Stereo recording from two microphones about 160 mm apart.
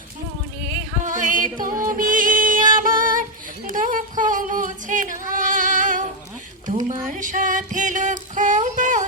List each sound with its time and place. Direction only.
1.0 s yodeling: 55° right (ahead or behind)
1.6 s music: 20° right (ahead or behind)
1.9 s music: 60° right (ahead or behind)
4.2 s singing: 55° right (ahead or behind)
7.0 s music: 50° right (ahead or behind)